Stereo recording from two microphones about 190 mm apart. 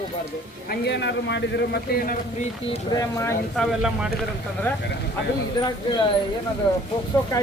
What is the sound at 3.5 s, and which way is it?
Speech, centre (ahead or behind).